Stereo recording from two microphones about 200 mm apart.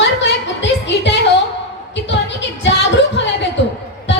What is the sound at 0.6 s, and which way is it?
Music, 60° left (ahead or behind).